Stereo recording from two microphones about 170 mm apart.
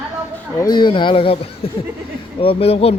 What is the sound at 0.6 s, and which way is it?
A man's voice, 25° left (ahead or behind).